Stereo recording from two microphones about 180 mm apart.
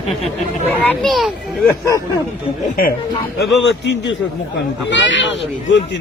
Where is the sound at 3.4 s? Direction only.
75° left (ahead or behind).